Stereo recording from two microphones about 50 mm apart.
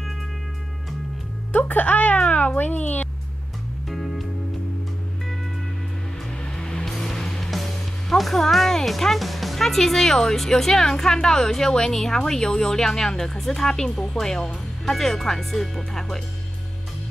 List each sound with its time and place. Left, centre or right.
1.5 s a child's voice: left
3.9 s music: centre
6.5 s music: centre
8.1 s speech: centre